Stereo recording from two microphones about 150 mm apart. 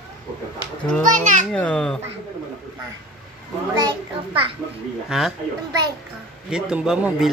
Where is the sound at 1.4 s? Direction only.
10° left (ahead or behind).